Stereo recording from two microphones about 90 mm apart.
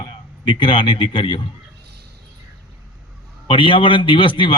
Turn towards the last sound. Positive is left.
turn(degrees=70)  # may be behind; listen again after turning